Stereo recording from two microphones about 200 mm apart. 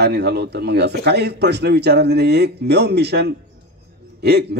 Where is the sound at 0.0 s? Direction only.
55° right (ahead or behind).